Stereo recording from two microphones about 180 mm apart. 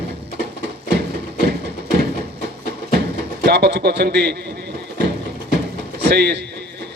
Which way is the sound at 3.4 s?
65° right (ahead or behind).